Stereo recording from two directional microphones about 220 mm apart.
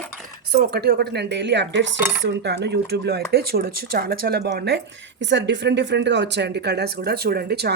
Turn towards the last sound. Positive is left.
turn(degrees=-45)  # may be behind; listen again after turning